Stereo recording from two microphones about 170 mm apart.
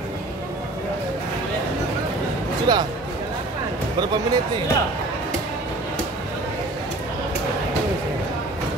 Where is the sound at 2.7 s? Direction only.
25° right (ahead or behind).